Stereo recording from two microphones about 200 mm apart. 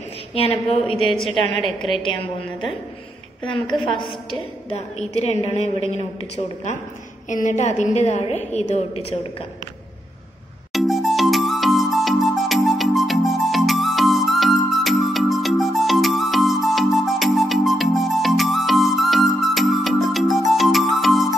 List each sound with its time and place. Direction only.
0.3 s a woman's voice: 30° left (ahead or behind)
3.8 s a woman's voice: 25° left (ahead or behind)
7.2 s a woman's voice: 40° left (ahead or behind)
10.7 s music: centre (ahead or behind)